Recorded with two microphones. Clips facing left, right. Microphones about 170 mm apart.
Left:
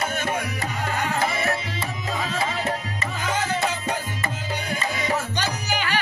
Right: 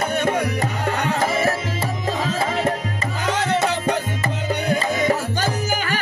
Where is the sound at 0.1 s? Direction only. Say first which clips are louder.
Right 6 dB; 65° right (ahead or behind).